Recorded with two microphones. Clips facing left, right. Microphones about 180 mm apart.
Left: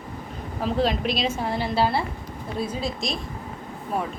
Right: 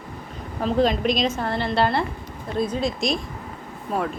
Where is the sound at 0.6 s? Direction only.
5° left (ahead or behind).